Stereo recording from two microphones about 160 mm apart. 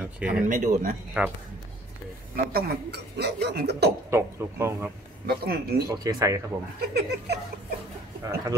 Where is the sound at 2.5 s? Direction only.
80° right.